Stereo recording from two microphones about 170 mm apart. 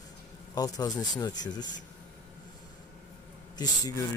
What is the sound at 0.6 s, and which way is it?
Speech, 20° left (ahead or behind).